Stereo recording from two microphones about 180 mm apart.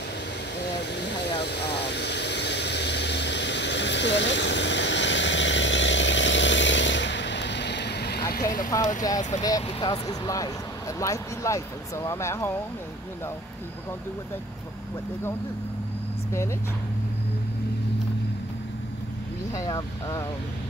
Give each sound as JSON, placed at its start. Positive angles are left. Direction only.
{"t": 1.4, "sound": "vehicle", "side_deg": 70}
{"t": 8.6, "sound": "speech", "side_deg": 20}
{"t": 19.5, "sound": "speech", "side_deg": 20}